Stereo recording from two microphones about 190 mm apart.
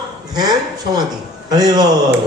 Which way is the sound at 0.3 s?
20° right (ahead or behind).